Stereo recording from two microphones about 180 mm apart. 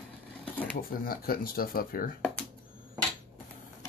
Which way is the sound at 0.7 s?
55° left (ahead or behind).